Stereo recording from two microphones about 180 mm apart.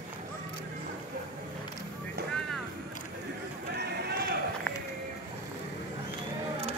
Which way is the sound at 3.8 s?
60° right (ahead or behind).